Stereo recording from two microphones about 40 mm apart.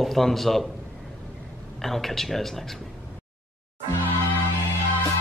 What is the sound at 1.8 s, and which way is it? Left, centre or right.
Speech, centre.